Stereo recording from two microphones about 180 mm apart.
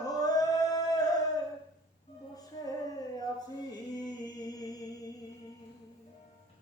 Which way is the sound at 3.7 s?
20° left (ahead or behind).